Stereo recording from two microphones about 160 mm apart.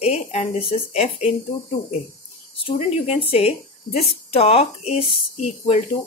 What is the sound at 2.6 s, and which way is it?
A woman's voice, 40° left (ahead or behind).